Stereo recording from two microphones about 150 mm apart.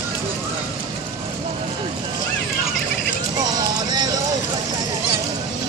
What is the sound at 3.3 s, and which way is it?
Vehicle, 25° right (ahead or behind).